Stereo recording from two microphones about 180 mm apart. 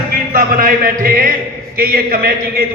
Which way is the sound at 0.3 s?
55° right (ahead or behind).